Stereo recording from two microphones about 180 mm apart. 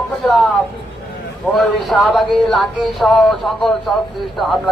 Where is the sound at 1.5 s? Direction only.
Centre (ahead or behind).